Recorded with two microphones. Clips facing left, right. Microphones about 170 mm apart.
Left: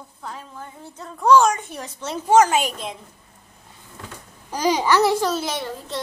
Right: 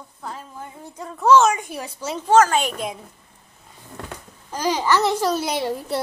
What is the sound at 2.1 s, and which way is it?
Speech, 15° left (ahead or behind).